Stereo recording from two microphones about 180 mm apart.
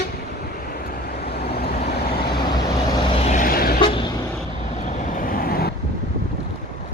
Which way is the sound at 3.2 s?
45° left (ahead or behind).